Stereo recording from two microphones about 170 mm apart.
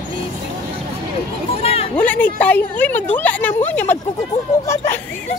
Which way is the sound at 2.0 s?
10° left (ahead or behind).